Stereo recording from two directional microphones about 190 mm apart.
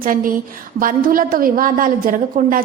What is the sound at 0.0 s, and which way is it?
A woman's voice, 50° right (ahead or behind).